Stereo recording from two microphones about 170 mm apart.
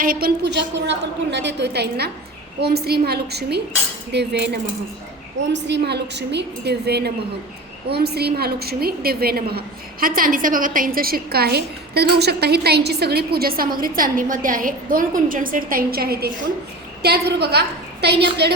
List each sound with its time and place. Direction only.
0.0 s a woman's voice: 60° right (ahead or behind); by 18.5 s 75° right (ahead or behind)